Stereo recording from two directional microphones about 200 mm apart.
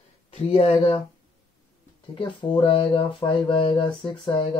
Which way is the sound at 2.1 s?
25° left (ahead or behind).